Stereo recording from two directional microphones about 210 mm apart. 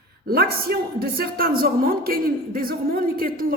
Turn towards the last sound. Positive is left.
turn(degrees=-45)  # may be behind; listen again after turning